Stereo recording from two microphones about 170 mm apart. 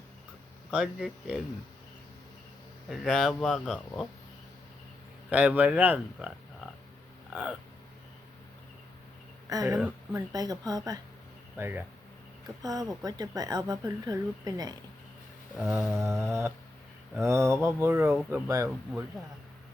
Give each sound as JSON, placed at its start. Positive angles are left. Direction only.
{"t": 0.7, "sound": "speech", "side_deg": -5}
{"t": 2.9, "sound": "speech", "side_deg": 0}
{"t": 5.3, "sound": "speech", "side_deg": -10}
{"t": 9.5, "sound": "speech", "side_deg": -20}
{"t": 9.7, "sound": "speech", "side_deg": -5}
{"t": 10.2, "sound": "speech", "side_deg": -20}
{"t": 11.5, "sound": "speech", "side_deg": -10}
{"t": 12.6, "sound": "speech", "side_deg": -20}
{"t": 15.5, "sound": "speech", "side_deg": 0}
{"t": 16.2, "sound": "speech", "side_deg": -15}